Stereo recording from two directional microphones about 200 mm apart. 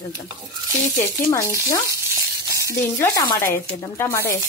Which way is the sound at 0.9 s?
15° left (ahead or behind).